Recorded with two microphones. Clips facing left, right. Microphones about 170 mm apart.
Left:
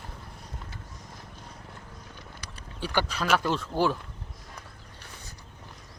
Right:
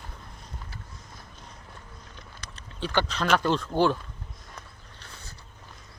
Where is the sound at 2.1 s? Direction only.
10° left (ahead or behind).